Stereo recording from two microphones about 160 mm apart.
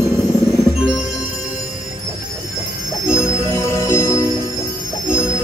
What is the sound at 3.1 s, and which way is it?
Bell, 15° left (ahead or behind).